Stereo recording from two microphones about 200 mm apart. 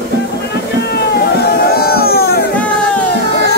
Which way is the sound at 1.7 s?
50° left (ahead or behind).